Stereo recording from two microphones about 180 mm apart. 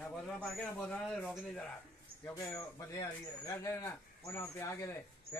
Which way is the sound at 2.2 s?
20° left (ahead or behind).